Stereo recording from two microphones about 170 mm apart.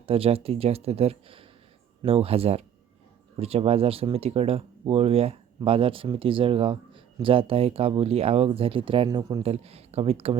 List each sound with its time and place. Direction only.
0.0 s speech: 35° right (ahead or behind)
9.4 s speech: 35° right (ahead or behind)